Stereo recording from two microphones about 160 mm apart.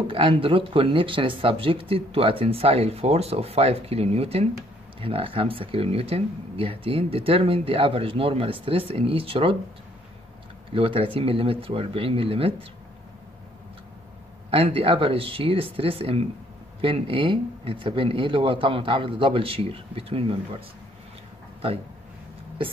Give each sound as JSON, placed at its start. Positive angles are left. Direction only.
{"t": 0.1, "sound": "speech", "side_deg": -35}
{"t": 10.7, "sound": "speech", "side_deg": -35}
{"t": 14.5, "sound": "speech", "side_deg": -35}